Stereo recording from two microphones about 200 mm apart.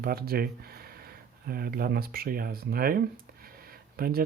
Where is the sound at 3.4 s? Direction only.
50° right (ahead or behind).